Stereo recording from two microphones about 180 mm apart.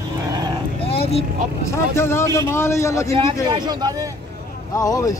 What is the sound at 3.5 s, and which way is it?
Speech, 25° right (ahead or behind).